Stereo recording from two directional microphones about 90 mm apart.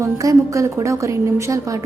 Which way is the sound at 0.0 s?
35° right (ahead or behind).